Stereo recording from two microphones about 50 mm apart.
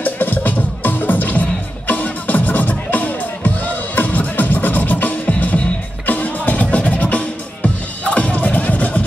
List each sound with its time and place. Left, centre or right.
0.0 s music: left